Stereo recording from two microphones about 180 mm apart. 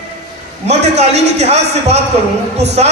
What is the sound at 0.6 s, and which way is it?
A man's voice, 35° right (ahead or behind).